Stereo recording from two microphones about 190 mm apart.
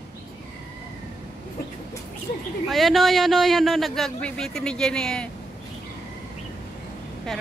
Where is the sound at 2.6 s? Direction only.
Centre (ahead or behind).